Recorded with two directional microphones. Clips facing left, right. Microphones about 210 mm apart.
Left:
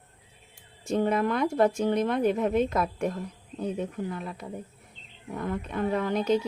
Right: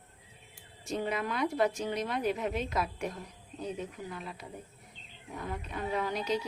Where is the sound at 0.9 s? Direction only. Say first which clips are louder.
Left 8 dB; 50° left (ahead or behind).